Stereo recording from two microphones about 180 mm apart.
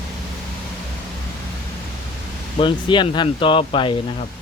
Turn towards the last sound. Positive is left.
turn(degrees=30)  # may be behind; listen again after turning